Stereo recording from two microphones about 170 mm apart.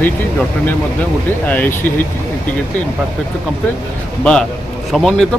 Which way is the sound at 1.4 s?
10° left (ahead or behind).